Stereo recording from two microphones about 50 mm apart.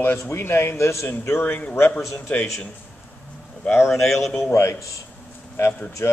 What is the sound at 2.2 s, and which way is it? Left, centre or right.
Speech, left.